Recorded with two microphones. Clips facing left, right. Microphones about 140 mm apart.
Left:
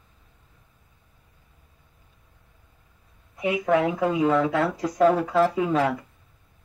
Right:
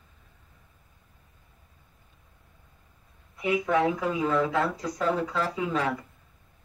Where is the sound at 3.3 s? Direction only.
55° left (ahead or behind).